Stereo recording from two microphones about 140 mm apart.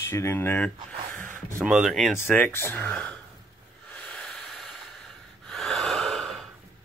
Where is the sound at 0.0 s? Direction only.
20° left (ahead or behind).